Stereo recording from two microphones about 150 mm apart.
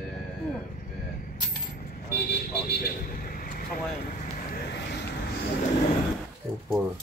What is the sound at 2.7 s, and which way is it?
Vehicle, 80° left.